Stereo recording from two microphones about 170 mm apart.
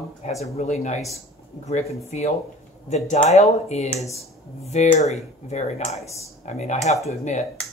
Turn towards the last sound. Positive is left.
turn(degrees=40)  # may be behind; listen again after turning